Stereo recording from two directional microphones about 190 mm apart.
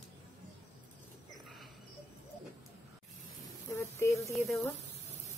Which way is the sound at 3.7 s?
15° left (ahead or behind).